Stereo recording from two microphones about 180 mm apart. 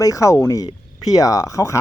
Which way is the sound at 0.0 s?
20° left (ahead or behind).